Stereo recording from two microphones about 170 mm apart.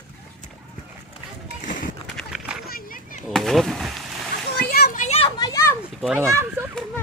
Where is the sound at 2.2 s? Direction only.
5° right (ahead or behind).